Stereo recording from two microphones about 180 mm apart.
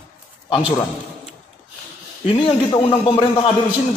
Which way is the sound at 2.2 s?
30° left (ahead or behind).